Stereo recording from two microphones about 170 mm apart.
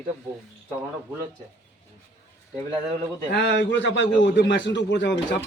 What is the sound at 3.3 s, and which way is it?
A man's voice, 85° left.